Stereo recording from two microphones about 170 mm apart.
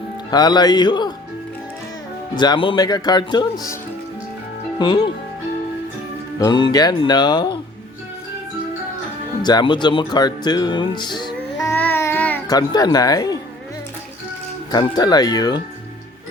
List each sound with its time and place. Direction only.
0.3 s speech: 25° left (ahead or behind)
2.3 s speech: 25° left (ahead or behind)
4.8 s speech: 25° left (ahead or behind)
6.4 s speech: 25° left (ahead or behind)
9.4 s speech: 25° left (ahead or behind)
11.6 s child singing: 10° left (ahead or behind)
12.5 s speech: 20° left (ahead or behind)
14.7 s speech: 25° left (ahead or behind)